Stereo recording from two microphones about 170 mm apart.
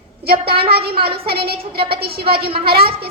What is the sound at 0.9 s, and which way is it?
Speech, 30° right (ahead or behind).